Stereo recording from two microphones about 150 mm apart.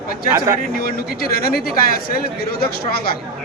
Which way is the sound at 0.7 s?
80° left.